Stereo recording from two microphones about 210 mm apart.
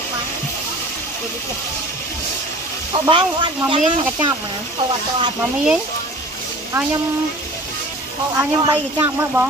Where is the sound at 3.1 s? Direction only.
25° right (ahead or behind).